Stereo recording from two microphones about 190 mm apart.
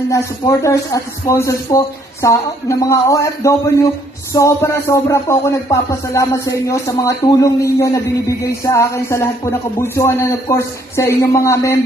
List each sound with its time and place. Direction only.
0.1 s speech: 15° left (ahead or behind)